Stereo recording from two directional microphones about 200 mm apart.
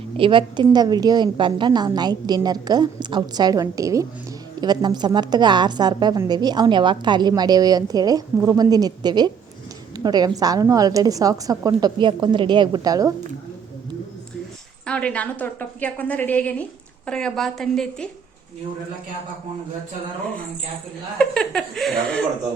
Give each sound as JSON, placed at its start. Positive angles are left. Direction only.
{"t": 0.2, "sound": "a woman's voice", "side_deg": -25}
{"t": 14.8, "sound": "a woman's voice", "side_deg": 5}
{"t": 21.2, "sound": "a woman's voice", "side_deg": 5}